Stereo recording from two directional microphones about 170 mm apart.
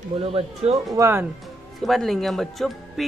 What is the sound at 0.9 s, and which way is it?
Speech, 15° right (ahead or behind).